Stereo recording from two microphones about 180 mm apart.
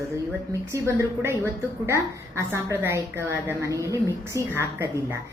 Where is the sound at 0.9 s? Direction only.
15° right (ahead or behind).